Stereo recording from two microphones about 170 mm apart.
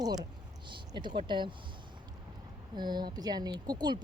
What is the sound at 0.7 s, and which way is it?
Speech, 30° right (ahead or behind).